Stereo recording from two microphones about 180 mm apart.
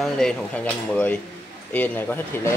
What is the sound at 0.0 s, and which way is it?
Speech, 5° left (ahead or behind).